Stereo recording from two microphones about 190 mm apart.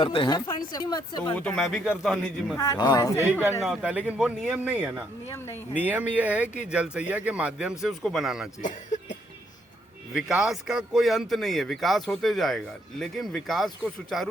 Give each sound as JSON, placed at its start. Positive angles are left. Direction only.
{"t": 0.0, "sound": "speech", "side_deg": 25}
{"t": 1.4, "sound": "a man's voice", "side_deg": 5}
{"t": 2.6, "sound": "speech", "side_deg": 20}
{"t": 3.6, "sound": "speech", "side_deg": -5}
{"t": 10.1, "sound": "a man's voice", "side_deg": 0}